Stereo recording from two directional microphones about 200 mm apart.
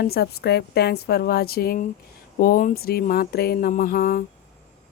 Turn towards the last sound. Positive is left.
turn(degrees=45)  # may be behind; listen again after turning